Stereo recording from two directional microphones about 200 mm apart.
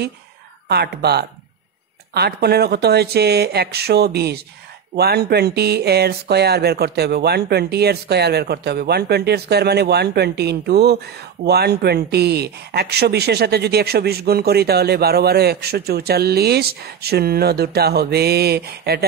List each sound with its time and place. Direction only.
0.7 s speech: 55° right (ahead or behind)